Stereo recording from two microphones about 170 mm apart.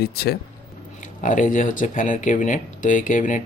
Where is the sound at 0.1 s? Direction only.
65° left (ahead or behind).